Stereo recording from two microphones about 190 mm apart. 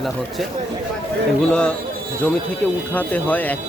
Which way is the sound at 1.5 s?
5° left (ahead or behind).